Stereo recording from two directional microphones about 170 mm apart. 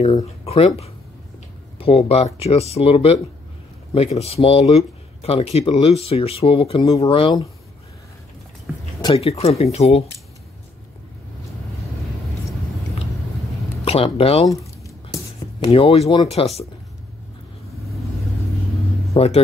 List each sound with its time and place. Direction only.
0.0 s speech: 40° left (ahead or behind)
2.3 s speech: 35° left (ahead or behind)
6.8 s speech: 20° left (ahead or behind)
9.0 s speech: 35° left (ahead or behind)
13.8 s speech: 35° left (ahead or behind)
15.6 s speech: 30° left (ahead or behind)
19.1 s speech: 35° left (ahead or behind)